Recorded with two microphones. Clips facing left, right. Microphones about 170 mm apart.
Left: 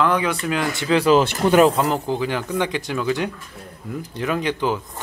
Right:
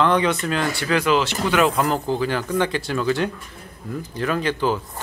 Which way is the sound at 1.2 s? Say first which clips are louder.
Left 5 dB; 55° left (ahead or behind).